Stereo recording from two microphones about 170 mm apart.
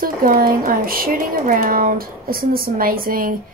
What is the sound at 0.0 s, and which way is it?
Speech, 55° right (ahead or behind).